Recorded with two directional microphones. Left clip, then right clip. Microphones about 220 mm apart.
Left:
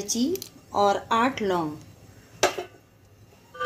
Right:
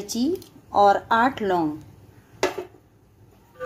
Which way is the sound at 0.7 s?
10° right (ahead or behind).